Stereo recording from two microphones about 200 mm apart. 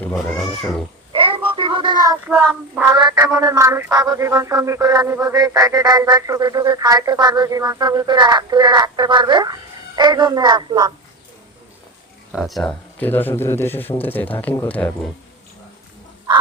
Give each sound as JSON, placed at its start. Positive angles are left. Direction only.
{"t": 0.0, "sound": "speech", "side_deg": 5}
{"t": 1.1, "sound": "child singing", "side_deg": -25}
{"t": 2.9, "sound": "a sound", "side_deg": -20}
{"t": 12.3, "sound": "speech", "side_deg": 0}